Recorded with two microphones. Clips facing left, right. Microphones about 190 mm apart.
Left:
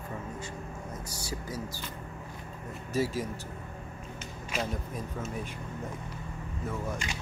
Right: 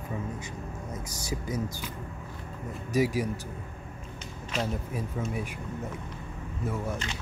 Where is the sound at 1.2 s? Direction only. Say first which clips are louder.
Right 6 dB; 20° right (ahead or behind).